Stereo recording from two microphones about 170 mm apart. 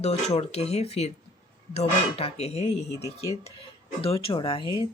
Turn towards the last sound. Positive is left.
turn(degrees=30)  # may be behind; listen again after turning